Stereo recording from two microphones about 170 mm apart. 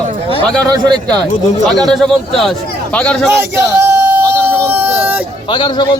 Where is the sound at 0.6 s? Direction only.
25° right (ahead or behind).